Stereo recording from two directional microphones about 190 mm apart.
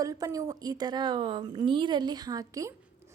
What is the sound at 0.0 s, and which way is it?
A woman's voice, 20° right (ahead or behind).